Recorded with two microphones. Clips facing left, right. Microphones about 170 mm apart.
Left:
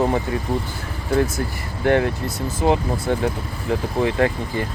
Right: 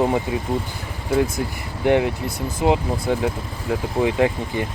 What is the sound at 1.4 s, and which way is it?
Speech, 15° right (ahead or behind).